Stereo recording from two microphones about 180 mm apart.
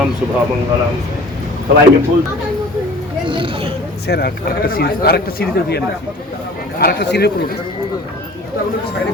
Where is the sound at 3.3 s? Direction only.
30° right (ahead or behind).